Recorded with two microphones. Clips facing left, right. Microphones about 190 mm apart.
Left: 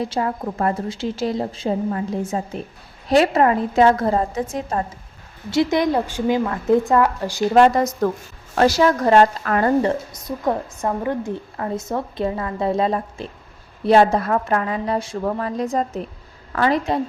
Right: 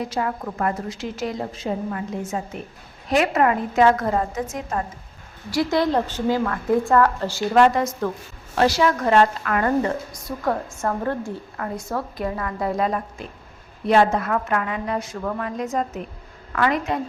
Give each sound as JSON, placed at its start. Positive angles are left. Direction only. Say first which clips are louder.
{"t": 0.0, "sound": "a woman's voice", "louder": "left 3 dB", "side_deg": 30}
{"t": 5.5, "sound": "a woman's voice", "louder": "left 2 dB", "side_deg": 20}
{"t": 7.5, "sound": "a woman's voice", "louder": "left 2 dB", "side_deg": 35}